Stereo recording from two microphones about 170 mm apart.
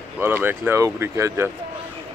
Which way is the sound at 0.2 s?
10° right (ahead or behind).